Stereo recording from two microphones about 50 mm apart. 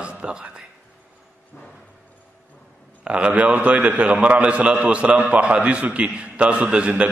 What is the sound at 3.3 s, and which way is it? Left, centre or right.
A man's voice, right.